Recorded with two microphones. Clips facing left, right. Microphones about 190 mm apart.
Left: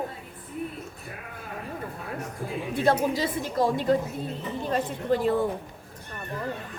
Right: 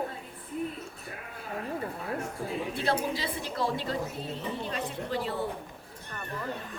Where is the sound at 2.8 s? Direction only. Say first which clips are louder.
Left 8 dB; 45° left (ahead or behind).